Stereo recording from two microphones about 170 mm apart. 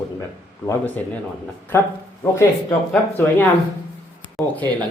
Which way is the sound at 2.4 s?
15° left (ahead or behind).